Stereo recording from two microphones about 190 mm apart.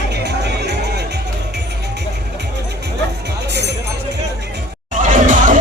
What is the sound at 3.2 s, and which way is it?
Music, 60° right (ahead or behind).